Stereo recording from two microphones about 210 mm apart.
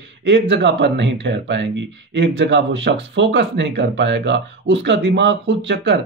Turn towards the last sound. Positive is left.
turn(degrees=-55)  # may be behind; listen again after turning